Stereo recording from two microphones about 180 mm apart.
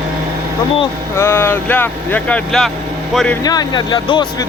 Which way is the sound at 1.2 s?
15° left (ahead or behind).